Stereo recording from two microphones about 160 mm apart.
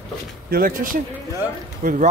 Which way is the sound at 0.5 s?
60° right (ahead or behind).